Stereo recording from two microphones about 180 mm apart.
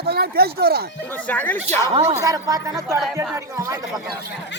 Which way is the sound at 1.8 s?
30° right (ahead or behind).